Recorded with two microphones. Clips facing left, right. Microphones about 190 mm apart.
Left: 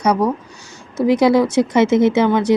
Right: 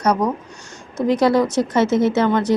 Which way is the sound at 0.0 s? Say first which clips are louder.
Left 2 dB; 10° left (ahead or behind).